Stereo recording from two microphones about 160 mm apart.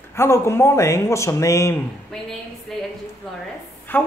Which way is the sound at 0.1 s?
15° left (ahead or behind).